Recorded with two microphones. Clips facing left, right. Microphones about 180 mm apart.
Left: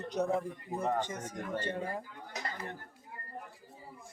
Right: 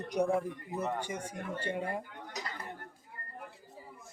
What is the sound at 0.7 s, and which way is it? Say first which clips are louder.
Speech: left 2 dB; 30° left (ahead or behind).